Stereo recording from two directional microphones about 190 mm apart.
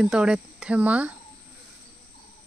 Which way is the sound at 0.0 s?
5° right (ahead or behind).